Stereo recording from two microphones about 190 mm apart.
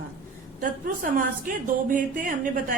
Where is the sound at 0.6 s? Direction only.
45° right (ahead or behind).